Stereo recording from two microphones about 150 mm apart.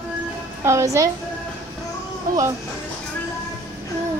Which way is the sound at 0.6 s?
20° right (ahead or behind).